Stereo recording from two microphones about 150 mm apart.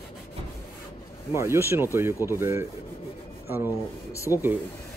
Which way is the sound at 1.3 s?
15° right (ahead or behind).